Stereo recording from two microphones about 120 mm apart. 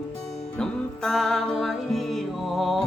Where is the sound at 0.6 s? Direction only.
5° left (ahead or behind).